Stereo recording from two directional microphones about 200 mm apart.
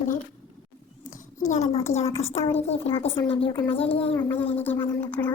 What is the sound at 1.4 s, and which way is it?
A woman's voice, 35° left (ahead or behind).